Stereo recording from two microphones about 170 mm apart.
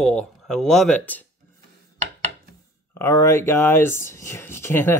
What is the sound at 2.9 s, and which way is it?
Speech, 20° left (ahead or behind).